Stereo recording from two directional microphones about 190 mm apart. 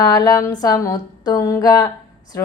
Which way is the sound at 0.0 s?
20° left (ahead or behind).